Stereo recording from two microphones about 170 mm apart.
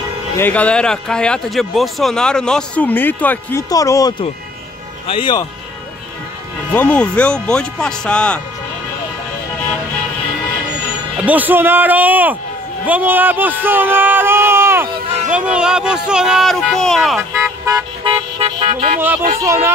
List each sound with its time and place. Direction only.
0.4 s speech: 10° left (ahead or behind)
5.0 s speech: 30° left (ahead or behind)
6.7 s speech: 10° left (ahead or behind)
11.1 s speech: 10° right (ahead or behind)
15.0 s a sound: 40° right (ahead or behind)
15.3 s speech: 5° right (ahead or behind)
18.0 s car: 35° right (ahead or behind)
18.9 s speech: 10° right (ahead or behind)